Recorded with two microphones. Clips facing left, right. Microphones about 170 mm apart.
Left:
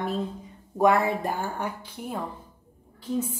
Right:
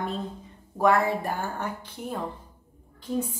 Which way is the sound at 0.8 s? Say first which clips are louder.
Left 1 dB; 20° left (ahead or behind).